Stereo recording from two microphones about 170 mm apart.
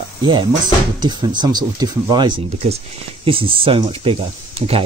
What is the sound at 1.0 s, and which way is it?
Speech, 25° right (ahead or behind).